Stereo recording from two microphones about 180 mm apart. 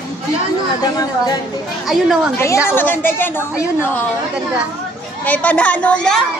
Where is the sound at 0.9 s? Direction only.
20° left (ahead or behind).